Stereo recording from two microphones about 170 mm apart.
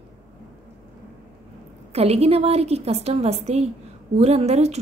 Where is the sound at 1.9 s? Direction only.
35° right (ahead or behind).